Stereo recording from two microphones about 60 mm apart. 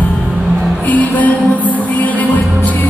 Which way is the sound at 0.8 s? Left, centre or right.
Left.